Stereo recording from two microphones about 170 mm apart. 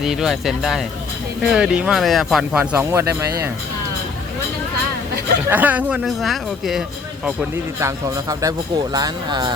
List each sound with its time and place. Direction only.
0.0 s speech: 5° right (ahead or behind)
5.5 s speech: 10° right (ahead or behind)
7.8 s speech: 20° right (ahead or behind)